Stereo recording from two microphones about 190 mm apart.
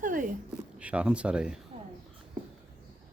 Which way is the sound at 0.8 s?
5° right (ahead or behind).